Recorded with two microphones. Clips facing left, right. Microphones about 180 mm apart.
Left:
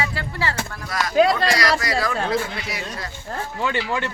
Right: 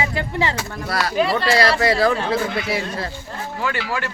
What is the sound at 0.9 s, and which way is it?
Speech, 35° right (ahead or behind).